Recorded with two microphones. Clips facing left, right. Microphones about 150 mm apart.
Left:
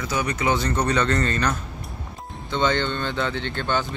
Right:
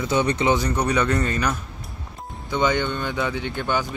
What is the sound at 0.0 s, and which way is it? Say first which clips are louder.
Speech: right 4 dB; 25° right (ahead or behind).